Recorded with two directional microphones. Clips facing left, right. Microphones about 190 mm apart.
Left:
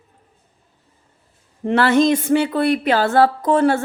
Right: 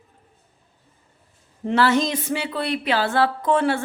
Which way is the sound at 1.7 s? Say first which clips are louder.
Left 5 dB; 55° left (ahead or behind).